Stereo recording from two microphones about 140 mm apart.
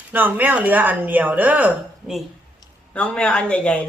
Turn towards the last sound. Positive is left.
turn(degrees=10)  # may be behind; listen again after turning